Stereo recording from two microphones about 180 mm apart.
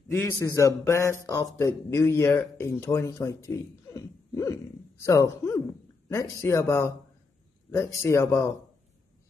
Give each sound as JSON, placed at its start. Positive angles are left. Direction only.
{"t": 0.3, "sound": "speech", "side_deg": 15}